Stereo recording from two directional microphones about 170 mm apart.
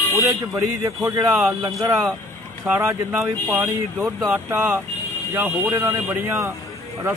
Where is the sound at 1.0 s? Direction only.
10° right (ahead or behind).